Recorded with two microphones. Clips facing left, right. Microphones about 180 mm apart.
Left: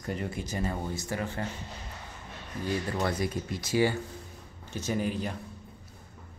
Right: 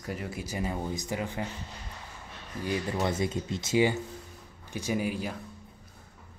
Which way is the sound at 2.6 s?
15° right (ahead or behind).